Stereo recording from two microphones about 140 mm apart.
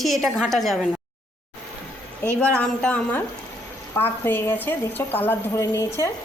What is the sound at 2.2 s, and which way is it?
A woman's voice, 10° left (ahead or behind).